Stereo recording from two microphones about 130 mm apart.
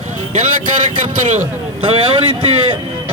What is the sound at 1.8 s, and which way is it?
Speech, 45° right (ahead or behind).